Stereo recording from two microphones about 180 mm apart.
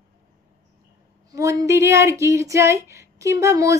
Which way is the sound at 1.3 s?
20° right (ahead or behind).